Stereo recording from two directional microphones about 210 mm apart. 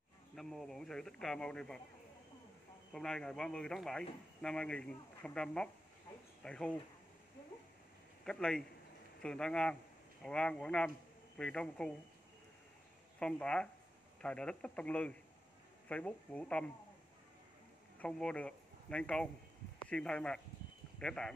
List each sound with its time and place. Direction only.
0.4 s a man's voice: centre (ahead or behind)
2.9 s a man's voice: 5° left (ahead or behind)
8.3 s a man's voice: 5° left (ahead or behind)
13.2 s a man's voice: 5° left (ahead or behind)
17.9 s a man's voice: 5° left (ahead or behind)